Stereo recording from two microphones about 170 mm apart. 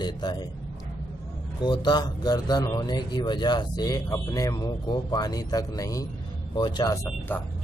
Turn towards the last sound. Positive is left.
turn(degrees=10)  # may be behind; listen again after turning